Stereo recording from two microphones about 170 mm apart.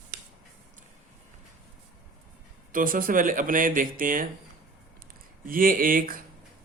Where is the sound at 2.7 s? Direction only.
55° right (ahead or behind).